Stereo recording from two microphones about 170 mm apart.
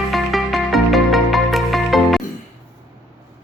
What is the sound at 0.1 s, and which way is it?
Music, centre (ahead or behind).